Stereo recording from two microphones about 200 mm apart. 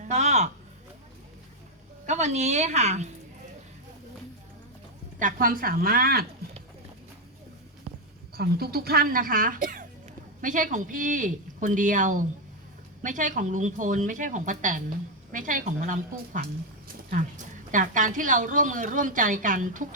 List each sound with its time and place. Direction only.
0.0 s a sound: 35° right (ahead or behind)
2.0 s speech: 35° right (ahead or behind)
5.2 s speech: 45° right (ahead or behind)
8.4 s speech: 50° right (ahead or behind)